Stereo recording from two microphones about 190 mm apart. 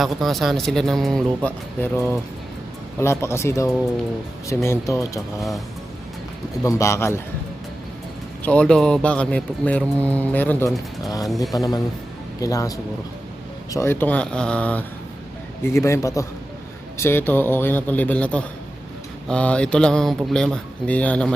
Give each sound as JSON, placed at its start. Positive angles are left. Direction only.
{"t": 0.0, "sound": "speech", "side_deg": 0}
{"t": 5.4, "sound": "speech", "side_deg": 0}
{"t": 6.6, "sound": "speech", "side_deg": 15}
{"t": 8.4, "sound": "speech", "side_deg": 5}
{"t": 11.5, "sound": "speech", "side_deg": 20}